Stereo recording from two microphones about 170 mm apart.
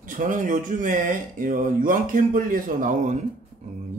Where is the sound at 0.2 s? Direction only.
55° right (ahead or behind).